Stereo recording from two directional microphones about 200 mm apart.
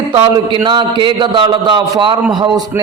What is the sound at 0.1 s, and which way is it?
A man's voice, 25° right (ahead or behind).